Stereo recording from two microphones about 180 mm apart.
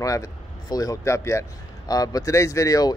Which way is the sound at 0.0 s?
20° left (ahead or behind).